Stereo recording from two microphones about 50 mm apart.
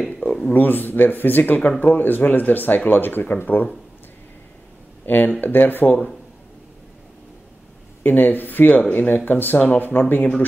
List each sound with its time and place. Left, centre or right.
0.2 s speech: left
5.0 s speech: left
8.0 s speech: left